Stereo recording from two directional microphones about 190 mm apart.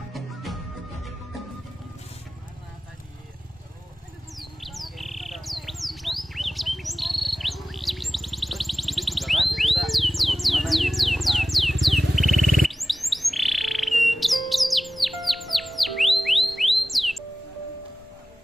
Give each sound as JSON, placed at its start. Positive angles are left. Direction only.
{"t": 0.1, "sound": "music", "side_deg": 0}
{"t": 4.4, "sound": "bird", "side_deg": 0}